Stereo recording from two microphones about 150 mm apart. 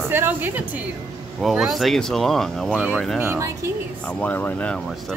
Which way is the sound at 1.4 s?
Centre (ahead or behind).